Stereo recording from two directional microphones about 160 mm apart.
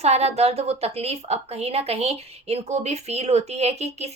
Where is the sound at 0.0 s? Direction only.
40° right (ahead or behind).